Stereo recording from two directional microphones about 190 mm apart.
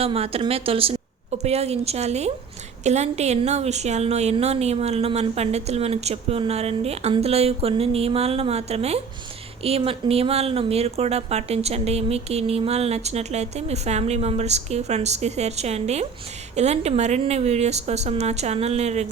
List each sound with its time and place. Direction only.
0.0 s speech: 30° right (ahead or behind)